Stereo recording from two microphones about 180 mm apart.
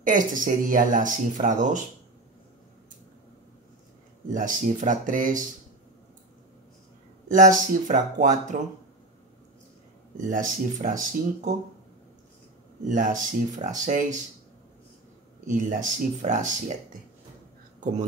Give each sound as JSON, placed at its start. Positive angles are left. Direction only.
{"t": 0.0, "sound": "speech", "side_deg": -45}
{"t": 4.3, "sound": "speech", "side_deg": -45}
{"t": 7.3, "sound": "speech", "side_deg": -45}
{"t": 10.2, "sound": "speech", "side_deg": -45}
{"t": 12.8, "sound": "speech", "side_deg": -45}
{"t": 15.4, "sound": "speech", "side_deg": -45}